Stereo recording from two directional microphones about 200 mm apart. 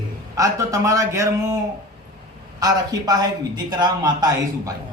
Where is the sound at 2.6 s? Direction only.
20° right (ahead or behind).